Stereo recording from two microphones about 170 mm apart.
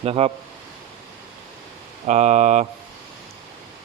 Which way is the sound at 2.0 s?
45° right (ahead or behind).